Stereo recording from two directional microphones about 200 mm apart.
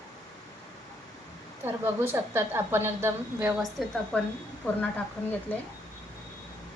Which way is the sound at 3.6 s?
Centre (ahead or behind).